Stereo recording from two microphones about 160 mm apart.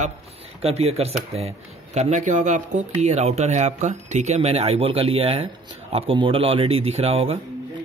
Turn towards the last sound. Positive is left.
turn(degrees=-40)  # may be behind; listen again after turning